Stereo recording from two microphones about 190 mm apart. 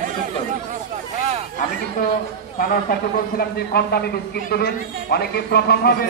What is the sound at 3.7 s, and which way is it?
A man's voice, 55° left (ahead or behind).